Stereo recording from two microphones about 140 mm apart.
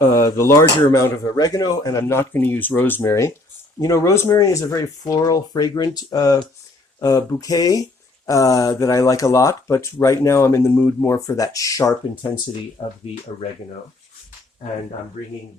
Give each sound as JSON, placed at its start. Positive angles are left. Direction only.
{"t": 0.0, "sound": "speech", "side_deg": 25}